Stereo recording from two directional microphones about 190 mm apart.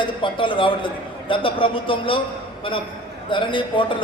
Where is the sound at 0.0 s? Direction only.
25° left (ahead or behind).